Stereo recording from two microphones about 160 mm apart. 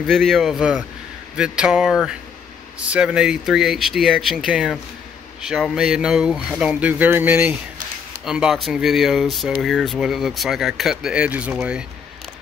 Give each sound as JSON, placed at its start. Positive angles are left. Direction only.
{"t": 0.0, "sound": "speech", "side_deg": 0}